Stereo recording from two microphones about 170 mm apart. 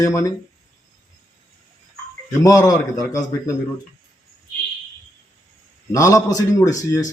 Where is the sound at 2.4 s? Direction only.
20° left (ahead or behind).